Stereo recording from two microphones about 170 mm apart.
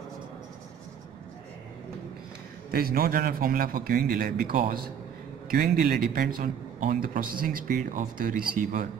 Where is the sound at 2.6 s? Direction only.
60° right (ahead or behind).